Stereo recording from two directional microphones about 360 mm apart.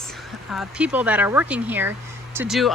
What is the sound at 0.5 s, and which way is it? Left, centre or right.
Speech, centre.